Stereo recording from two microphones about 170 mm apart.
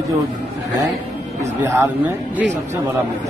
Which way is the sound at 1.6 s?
15° right (ahead or behind).